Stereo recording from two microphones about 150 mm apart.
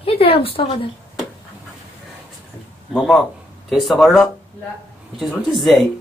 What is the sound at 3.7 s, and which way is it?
Speech, centre (ahead or behind).